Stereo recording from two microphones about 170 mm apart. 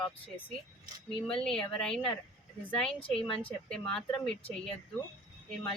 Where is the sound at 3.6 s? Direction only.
5° left (ahead or behind).